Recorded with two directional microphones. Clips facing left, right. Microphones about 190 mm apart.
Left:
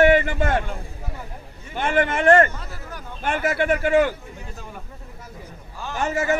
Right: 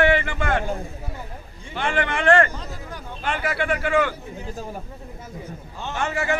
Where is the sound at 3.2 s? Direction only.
45° left (ahead or behind).